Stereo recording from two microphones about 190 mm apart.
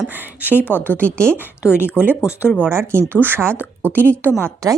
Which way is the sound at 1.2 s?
10° right (ahead or behind).